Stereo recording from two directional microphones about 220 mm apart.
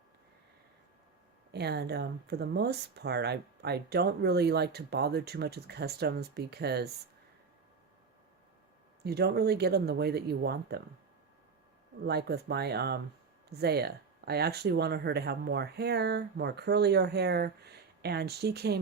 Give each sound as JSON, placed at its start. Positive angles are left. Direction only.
{"t": 1.5, "sound": "speech", "side_deg": -50}
{"t": 9.0, "sound": "speech", "side_deg": -45}
{"t": 12.0, "sound": "speech", "side_deg": -45}